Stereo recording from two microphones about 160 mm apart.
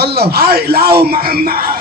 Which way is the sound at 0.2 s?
75° right (ahead or behind).